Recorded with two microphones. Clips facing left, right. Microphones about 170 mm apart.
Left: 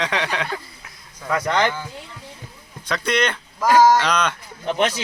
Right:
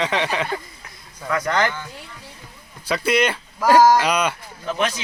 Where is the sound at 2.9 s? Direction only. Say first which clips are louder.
Right 2 dB; 5° right (ahead or behind).